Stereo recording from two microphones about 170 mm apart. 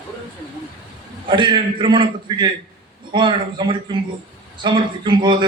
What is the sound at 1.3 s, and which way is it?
A man's voice, 30° right (ahead or behind).